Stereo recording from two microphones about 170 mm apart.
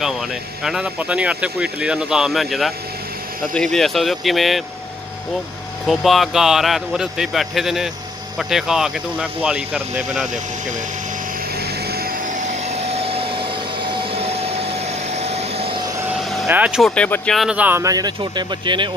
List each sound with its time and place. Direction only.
0.7 s speech: 5° right (ahead or behind)
5.9 s speech: centre (ahead or behind)
11.6 s vacuum cleaner: 65° right (ahead or behind); by 15.8 s 35° right (ahead or behind)
16.4 s speech: 10° right (ahead or behind)
16.9 s speech: 5° left (ahead or behind); by 18.9 s 25° right (ahead or behind)